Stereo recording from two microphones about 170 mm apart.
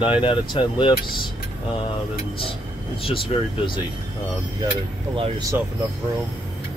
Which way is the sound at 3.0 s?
30° left (ahead or behind).